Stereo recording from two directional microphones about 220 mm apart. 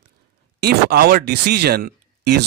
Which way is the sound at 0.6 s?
45° right (ahead or behind).